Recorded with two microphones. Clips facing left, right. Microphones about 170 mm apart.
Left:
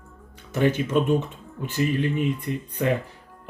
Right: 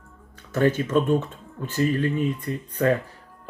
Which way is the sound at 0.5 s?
15° left (ahead or behind).